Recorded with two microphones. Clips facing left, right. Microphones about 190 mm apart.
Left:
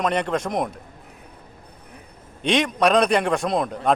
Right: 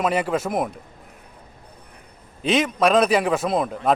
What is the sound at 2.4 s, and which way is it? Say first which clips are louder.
A man's voice: even; centre (ahead or behind).